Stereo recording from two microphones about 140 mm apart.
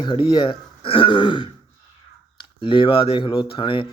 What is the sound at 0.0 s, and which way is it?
Speech, 40° left (ahead or behind).